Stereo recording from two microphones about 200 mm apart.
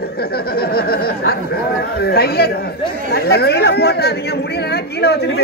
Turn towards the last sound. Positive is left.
turn(degrees=55)  # may be behind; listen again after turning